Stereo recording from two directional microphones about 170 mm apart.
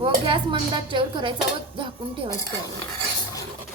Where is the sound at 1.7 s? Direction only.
30° right (ahead or behind).